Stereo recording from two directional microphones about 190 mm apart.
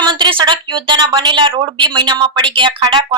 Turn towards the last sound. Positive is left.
turn(degrees=-25)  # may be behind; listen again after turning